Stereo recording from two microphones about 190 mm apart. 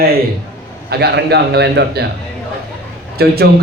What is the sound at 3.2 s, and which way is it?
Speech, 55° right (ahead or behind).